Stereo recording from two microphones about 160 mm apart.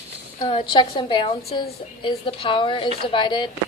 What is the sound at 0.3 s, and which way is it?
Speech, 30° left (ahead or behind).